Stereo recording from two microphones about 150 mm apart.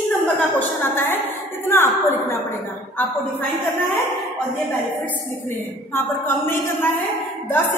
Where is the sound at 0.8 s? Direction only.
15° left (ahead or behind).